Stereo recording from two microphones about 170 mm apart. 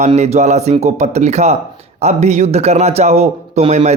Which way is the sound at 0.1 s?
40° right (ahead or behind).